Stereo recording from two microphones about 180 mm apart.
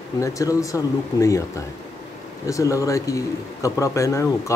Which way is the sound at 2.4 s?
20° left (ahead or behind).